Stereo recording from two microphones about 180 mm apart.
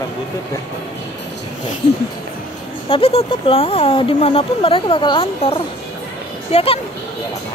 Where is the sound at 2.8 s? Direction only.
30° left (ahead or behind).